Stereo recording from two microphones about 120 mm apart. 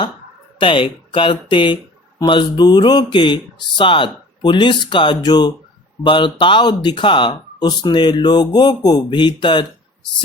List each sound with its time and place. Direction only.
0.6 s speech: 45° left (ahead or behind)